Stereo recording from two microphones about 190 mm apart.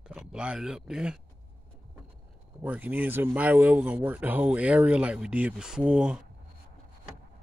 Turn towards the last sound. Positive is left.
turn(degrees=-5)  # may be behind; listen again after turning